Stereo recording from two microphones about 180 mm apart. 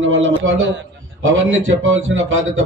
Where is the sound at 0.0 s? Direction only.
90° right.